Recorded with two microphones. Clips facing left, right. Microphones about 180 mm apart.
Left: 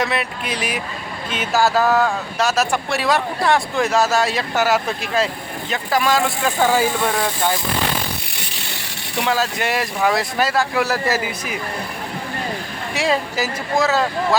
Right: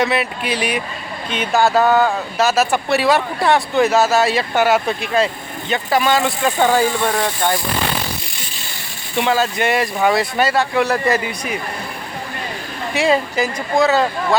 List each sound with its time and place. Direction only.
0.0 s speech: centre (ahead or behind)
8.4 s a sound: 70° left (ahead or behind)
9.1 s speech: centre (ahead or behind)
12.9 s speech: centre (ahead or behind)